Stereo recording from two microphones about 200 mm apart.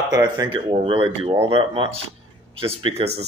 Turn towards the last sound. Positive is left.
turn(degrees=-30)  # may be behind; listen again after turning